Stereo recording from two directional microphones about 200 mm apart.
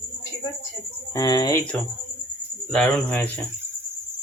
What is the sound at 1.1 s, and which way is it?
Speech, 20° left (ahead or behind).